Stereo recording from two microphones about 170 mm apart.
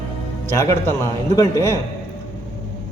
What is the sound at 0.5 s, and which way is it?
A man's voice, 15° left (ahead or behind).